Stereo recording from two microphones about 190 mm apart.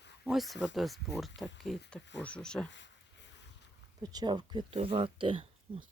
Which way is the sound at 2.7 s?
70° left (ahead or behind).